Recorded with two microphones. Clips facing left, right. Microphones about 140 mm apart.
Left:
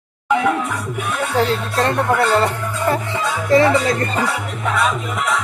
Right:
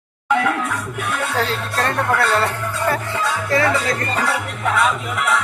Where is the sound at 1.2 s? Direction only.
15° left (ahead or behind).